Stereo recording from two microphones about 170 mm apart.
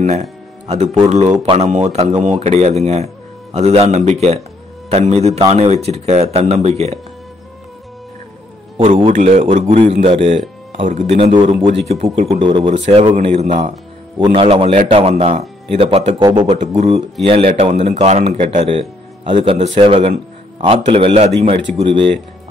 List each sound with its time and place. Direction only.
0.0 s a man's voice: 40° right (ahead or behind)
8.7 s a man's voice: 30° right (ahead or behind)
9.1 s a man's voice: 45° right (ahead or behind)
10.8 s speech: 50° right (ahead or behind)
11.1 s a man's voice: 30° right (ahead or behind)
12.8 s a man's voice: 40° right (ahead or behind)
19.4 s a man's voice: 30° right (ahead or behind)